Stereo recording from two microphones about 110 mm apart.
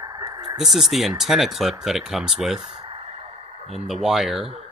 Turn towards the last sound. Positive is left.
turn(degrees=0)  # may be behind; listen again after turning